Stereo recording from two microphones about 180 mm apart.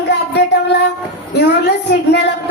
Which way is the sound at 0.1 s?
70° left (ahead or behind).